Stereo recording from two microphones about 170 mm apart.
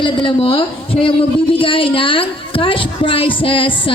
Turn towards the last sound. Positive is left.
turn(degrees=30)  # may be behind; listen again after turning